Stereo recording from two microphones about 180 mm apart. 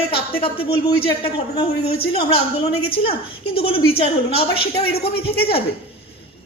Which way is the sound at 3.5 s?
30° left (ahead or behind).